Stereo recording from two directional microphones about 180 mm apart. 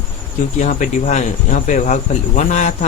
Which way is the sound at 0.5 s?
40° left (ahead or behind).